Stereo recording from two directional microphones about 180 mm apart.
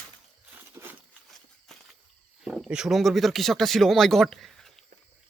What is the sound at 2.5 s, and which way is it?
Speech, 5° right (ahead or behind).